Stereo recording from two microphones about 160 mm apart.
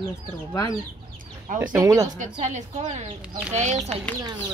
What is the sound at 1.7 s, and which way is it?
Speech, 20° right (ahead or behind).